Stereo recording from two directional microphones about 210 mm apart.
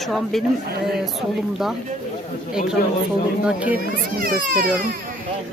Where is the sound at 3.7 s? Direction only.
45° right (ahead or behind).